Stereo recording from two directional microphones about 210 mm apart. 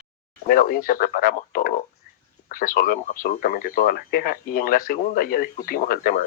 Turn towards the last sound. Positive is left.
turn(degrees=45)  # may be behind; listen again after turning